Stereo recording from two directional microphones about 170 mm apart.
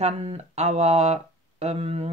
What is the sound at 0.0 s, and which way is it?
Speech, 40° right (ahead or behind).